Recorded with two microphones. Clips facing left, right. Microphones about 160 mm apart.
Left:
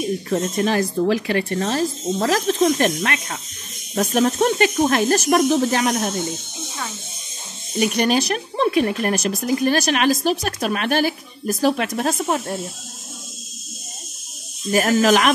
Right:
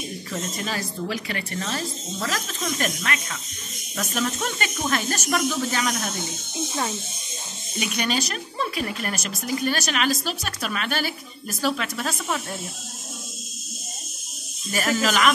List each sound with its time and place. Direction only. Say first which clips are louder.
0.3 s speech: left 9 dB; 45° left (ahead or behind)
1.2 s speech: left 9 dB; 40° left (ahead or behind)
7.8 s speech: left 8 dB; 45° left (ahead or behind)
9.4 s speech: left 4 dB; 45° left (ahead or behind)
14.7 s speech: left 8 dB; 45° left (ahead or behind)